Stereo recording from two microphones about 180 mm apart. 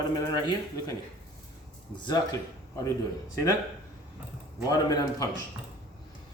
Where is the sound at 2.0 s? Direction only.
20° left (ahead or behind).